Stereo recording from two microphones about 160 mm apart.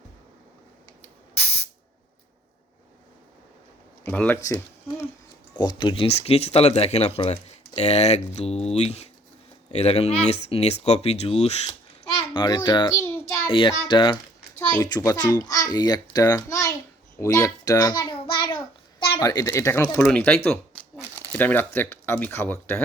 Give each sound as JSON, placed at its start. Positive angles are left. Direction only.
{"t": 4.1, "sound": "speech", "side_deg": 10}
{"t": 4.4, "sound": "speech", "side_deg": 20}
{"t": 12.1, "sound": "a child's voice", "side_deg": 30}
{"t": 17.2, "sound": "babbling", "side_deg": 20}
{"t": 19.2, "sound": "a child's voice", "side_deg": 20}
{"t": 20.1, "sound": "speech", "side_deg": 5}